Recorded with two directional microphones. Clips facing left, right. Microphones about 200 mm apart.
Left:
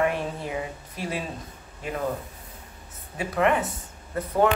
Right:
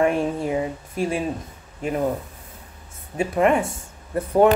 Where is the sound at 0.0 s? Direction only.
30° right (ahead or behind).